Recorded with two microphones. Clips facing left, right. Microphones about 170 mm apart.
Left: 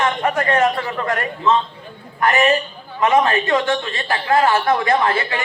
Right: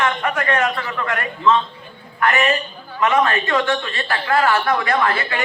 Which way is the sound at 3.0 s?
25° left (ahead or behind).